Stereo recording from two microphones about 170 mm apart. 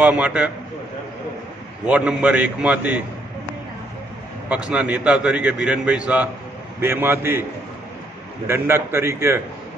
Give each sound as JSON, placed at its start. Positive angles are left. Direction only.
{"t": 0.0, "sound": "a man's voice", "side_deg": -5}
{"t": 1.9, "sound": "a man's voice", "side_deg": -5}
{"t": 4.5, "sound": "a man's voice", "side_deg": -5}
{"t": 8.5, "sound": "a man's voice", "side_deg": -15}